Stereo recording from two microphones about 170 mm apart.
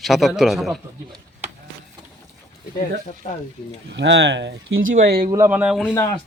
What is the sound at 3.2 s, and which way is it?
Speech, 40° left (ahead or behind).